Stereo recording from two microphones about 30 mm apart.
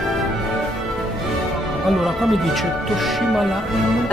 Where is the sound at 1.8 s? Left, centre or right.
Centre.